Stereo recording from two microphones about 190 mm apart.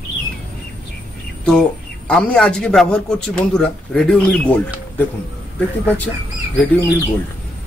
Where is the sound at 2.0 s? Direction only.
5° left (ahead or behind).